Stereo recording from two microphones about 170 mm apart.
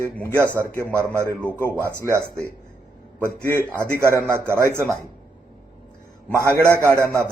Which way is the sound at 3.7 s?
15° right (ahead or behind).